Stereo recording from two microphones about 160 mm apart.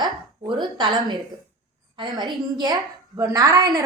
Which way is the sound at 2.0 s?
25° right (ahead or behind).